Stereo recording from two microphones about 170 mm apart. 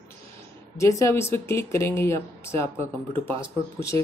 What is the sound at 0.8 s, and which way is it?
Speech, 15° left (ahead or behind).